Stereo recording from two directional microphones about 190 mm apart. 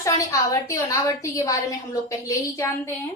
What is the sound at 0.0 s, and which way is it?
A woman's voice, 15° left (ahead or behind).